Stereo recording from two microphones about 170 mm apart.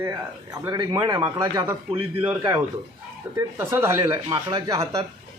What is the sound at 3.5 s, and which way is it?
Speech, 15° right (ahead or behind).